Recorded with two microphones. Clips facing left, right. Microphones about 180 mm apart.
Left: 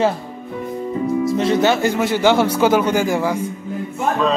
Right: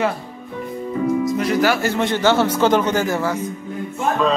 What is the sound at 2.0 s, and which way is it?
A man's voice, 10° left (ahead or behind).